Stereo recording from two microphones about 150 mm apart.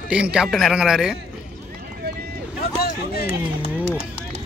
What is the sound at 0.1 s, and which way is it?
A man's voice, 5° right (ahead or behind).